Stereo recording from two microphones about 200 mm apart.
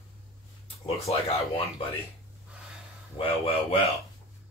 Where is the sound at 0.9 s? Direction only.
30° left (ahead or behind).